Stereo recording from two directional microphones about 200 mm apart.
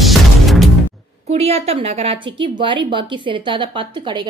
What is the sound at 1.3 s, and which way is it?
A woman's voice, 30° right (ahead or behind).